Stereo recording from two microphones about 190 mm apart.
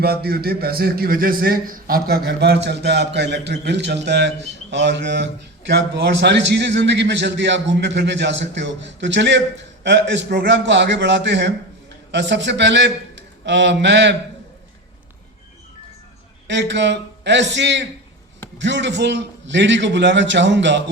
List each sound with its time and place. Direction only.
0.0 s a man's voice: 55° right (ahead or behind)
16.5 s a man's voice: 65° right (ahead or behind)